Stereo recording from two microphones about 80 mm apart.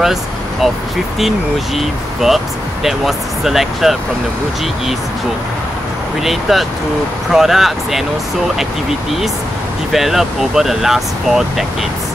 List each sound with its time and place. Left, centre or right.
0.0 s speech: centre
1.8 s speech: centre
6.5 s speech: centre
9.9 s speech: centre